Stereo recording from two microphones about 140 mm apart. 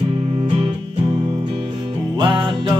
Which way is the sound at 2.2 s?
35° right (ahead or behind).